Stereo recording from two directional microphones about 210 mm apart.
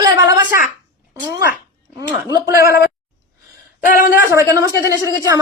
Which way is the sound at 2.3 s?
15° right (ahead or behind).